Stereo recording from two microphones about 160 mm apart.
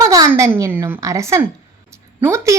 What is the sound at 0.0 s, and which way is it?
A woman's voice, 20° right (ahead or behind).